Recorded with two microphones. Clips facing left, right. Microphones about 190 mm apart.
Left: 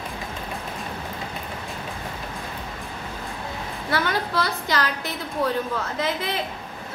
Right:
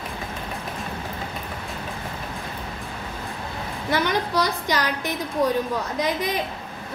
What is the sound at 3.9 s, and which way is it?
A woman's voice, 15° right (ahead or behind).